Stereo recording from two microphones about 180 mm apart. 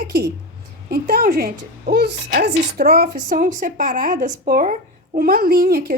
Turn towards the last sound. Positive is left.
turn(degrees=-55)  # may be behind; listen again after turning